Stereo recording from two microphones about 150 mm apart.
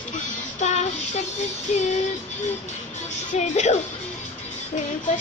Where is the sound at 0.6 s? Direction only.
50° left (ahead or behind).